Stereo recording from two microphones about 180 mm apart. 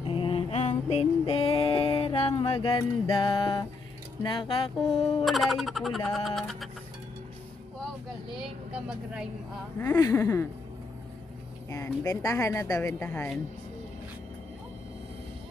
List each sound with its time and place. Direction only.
0.0 s female singing: 30° left (ahead or behind)
4.2 s speech: 25° left (ahead or behind)
5.2 s music: centre (ahead or behind)
8.4 s speech: 5° right (ahead or behind)
9.8 s a woman's voice: 15° left (ahead or behind)
11.7 s a woman's voice: 15° left (ahead or behind)